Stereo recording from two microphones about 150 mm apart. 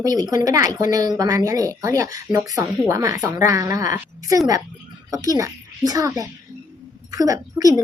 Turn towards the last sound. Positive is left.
turn(degrees=-25)  # may be behind; listen again after turning